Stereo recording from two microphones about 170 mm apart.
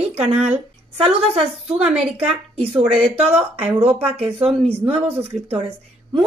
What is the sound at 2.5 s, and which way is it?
Speech, 35° right (ahead or behind).